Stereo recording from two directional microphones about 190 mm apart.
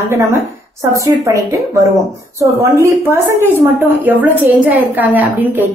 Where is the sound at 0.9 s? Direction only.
15° right (ahead or behind).